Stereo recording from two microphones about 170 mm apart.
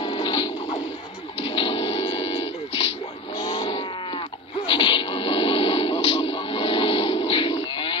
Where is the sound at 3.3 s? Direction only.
30° left (ahead or behind).